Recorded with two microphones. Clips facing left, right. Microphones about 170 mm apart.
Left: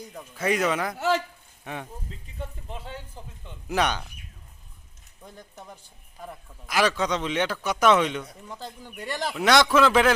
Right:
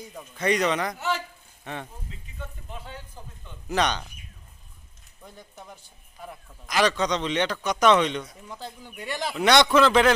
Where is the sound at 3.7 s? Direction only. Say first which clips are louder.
Even; 5° left (ahead or behind).